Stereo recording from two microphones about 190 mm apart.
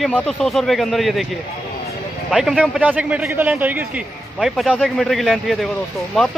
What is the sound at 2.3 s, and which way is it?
A man's voice, centre (ahead or behind).